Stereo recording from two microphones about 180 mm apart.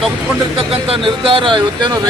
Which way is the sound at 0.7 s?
30° right (ahead or behind).